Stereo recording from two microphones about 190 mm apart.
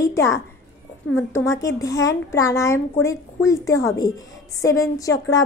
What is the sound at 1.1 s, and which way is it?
A woman's voice, 15° left (ahead or behind).